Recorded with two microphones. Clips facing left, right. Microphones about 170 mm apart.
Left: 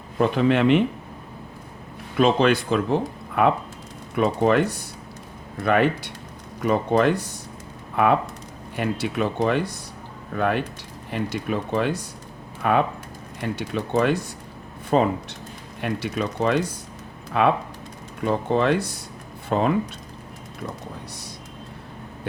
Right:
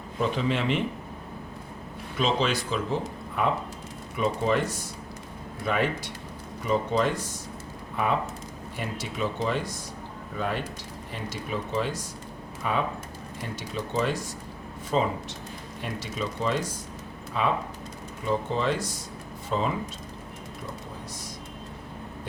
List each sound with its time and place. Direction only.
0.2 s speech: 60° left (ahead or behind)
2.1 s speech: 55° left (ahead or behind)
8.7 s speech: 65° left (ahead or behind)